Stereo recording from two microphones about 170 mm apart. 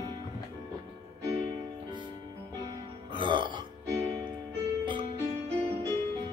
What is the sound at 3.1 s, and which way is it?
Burping, 30° right (ahead or behind).